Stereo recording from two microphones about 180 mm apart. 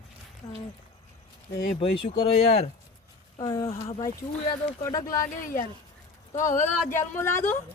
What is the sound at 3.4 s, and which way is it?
Speech, 20° left (ahead or behind).